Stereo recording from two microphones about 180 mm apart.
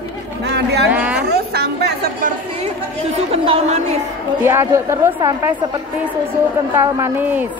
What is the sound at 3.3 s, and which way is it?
Speech, 30° right (ahead or behind).